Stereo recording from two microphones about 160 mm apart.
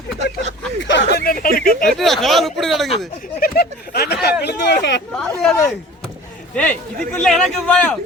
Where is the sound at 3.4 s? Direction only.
75° left (ahead or behind).